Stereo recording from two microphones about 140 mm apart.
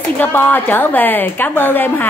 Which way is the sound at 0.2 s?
15° left (ahead or behind).